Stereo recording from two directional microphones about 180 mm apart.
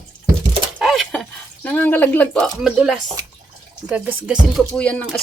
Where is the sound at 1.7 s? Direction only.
10° left (ahead or behind); by 4.6 s 5° right (ahead or behind).